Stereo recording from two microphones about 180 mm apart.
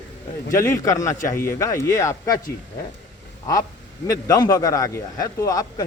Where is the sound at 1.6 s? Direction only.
15° left (ahead or behind).